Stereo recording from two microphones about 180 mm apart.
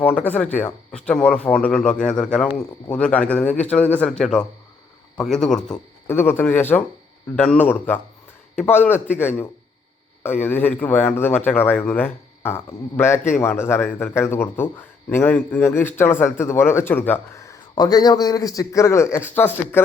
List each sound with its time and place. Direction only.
0.0 s speech: 10° left (ahead or behind)